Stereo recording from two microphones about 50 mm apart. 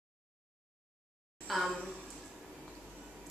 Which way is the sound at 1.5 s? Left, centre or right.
Centre.